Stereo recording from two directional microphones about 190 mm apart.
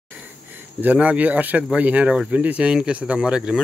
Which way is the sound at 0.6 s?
10° right (ahead or behind).